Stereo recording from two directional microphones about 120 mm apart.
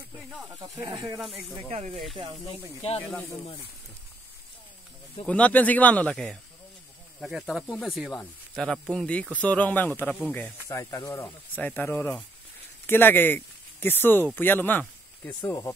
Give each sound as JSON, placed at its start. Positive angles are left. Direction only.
{"t": 0.6, "sound": "speech", "side_deg": -35}
{"t": 1.2, "sound": "speech", "side_deg": 0}
{"t": 5.2, "sound": "speech", "side_deg": 10}
{"t": 10.7, "sound": "speech", "side_deg": 25}
{"t": 11.5, "sound": "speech", "side_deg": 15}